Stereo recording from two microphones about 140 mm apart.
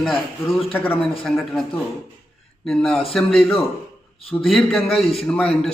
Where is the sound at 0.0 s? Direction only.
Centre (ahead or behind).